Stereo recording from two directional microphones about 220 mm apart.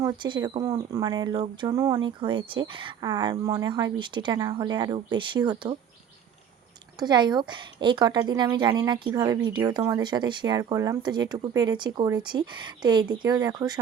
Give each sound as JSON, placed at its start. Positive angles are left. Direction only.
{"t": 0.0, "sound": "speech", "side_deg": -20}
{"t": 7.0, "sound": "speech", "side_deg": -20}